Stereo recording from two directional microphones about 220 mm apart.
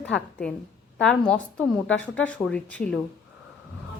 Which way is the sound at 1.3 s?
5° left (ahead or behind).